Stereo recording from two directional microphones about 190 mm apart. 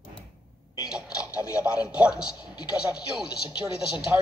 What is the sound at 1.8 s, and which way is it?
Speech, 5° right (ahead or behind).